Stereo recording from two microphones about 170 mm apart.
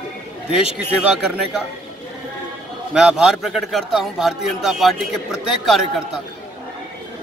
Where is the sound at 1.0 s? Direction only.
5° right (ahead or behind).